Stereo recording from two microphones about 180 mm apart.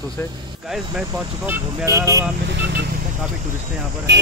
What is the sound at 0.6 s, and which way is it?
Speech, centre (ahead or behind).